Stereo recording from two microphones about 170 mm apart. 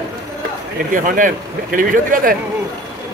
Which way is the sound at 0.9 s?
50° right (ahead or behind).